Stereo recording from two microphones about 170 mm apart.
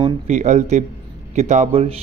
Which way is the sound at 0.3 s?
45° right (ahead or behind).